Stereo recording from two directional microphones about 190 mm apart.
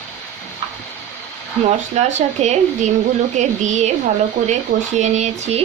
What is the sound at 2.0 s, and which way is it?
Speech, 35° right (ahead or behind).